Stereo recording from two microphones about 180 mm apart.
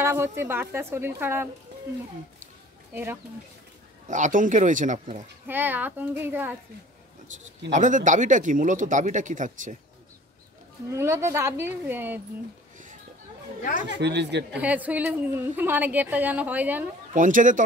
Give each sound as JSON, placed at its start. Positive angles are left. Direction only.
{"t": 0.0, "sound": "a woman's voice", "side_deg": -15}
{"t": 2.9, "sound": "speech", "side_deg": -10}
{"t": 4.1, "sound": "speech", "side_deg": -45}
{"t": 5.5, "sound": "a woman's voice", "side_deg": -10}
{"t": 7.7, "sound": "speech", "side_deg": -45}
{"t": 10.9, "sound": "a woman's voice", "side_deg": -15}
{"t": 13.7, "sound": "speech", "side_deg": -75}
{"t": 14.5, "sound": "a woman's voice", "side_deg": -10}
{"t": 17.1, "sound": "speech", "side_deg": -45}